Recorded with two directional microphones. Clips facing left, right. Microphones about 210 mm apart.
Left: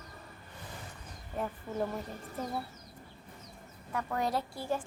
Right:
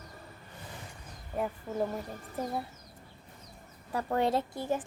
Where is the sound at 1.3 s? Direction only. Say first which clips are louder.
Right 2 dB; 10° right (ahead or behind).